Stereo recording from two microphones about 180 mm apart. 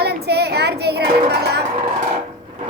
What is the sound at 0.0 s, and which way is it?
Music, 65° right (ahead or behind).